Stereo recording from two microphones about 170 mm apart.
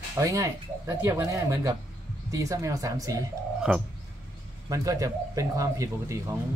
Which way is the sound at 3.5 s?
5° right (ahead or behind).